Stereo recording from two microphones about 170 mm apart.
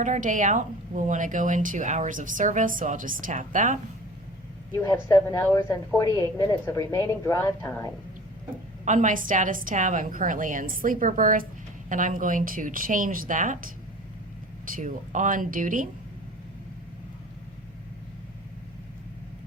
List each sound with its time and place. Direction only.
0.0 s a woman's voice: 45° right (ahead or behind)
4.7 s speech: 20° left (ahead or behind)
8.8 s a woman's voice: 50° right (ahead or behind)